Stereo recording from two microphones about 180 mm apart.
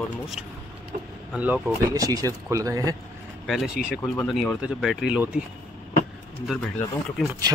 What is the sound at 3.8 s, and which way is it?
Speech, 55° left (ahead or behind).